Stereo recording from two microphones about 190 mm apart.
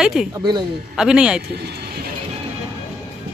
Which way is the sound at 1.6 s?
60° right (ahead or behind).